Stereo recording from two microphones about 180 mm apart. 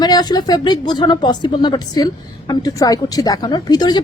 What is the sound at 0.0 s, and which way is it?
A woman's voice, 20° left (ahead or behind).